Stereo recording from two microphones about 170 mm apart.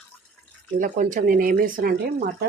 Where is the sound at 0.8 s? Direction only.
50° right (ahead or behind).